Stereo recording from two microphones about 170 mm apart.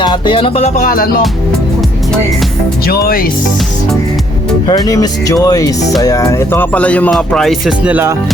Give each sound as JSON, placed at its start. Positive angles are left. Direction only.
{"t": 0.0, "sound": "music", "side_deg": 25}
{"t": 0.9, "sound": "speech", "side_deg": 60}
{"t": 2.8, "sound": "speech", "side_deg": 60}
{"t": 4.7, "sound": "speech", "side_deg": 20}
{"t": 6.0, "sound": "music", "side_deg": 20}
{"t": 7.9, "sound": "speech", "side_deg": -10}